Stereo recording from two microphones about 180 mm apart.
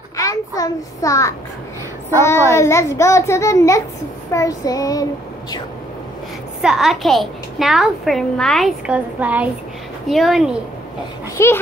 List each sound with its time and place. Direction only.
0.2 s a child's voice: 20° left (ahead or behind)
4.3 s child singing: 20° left (ahead or behind)
6.6 s a child's voice: centre (ahead or behind)
11.4 s a child's voice: 15° left (ahead or behind)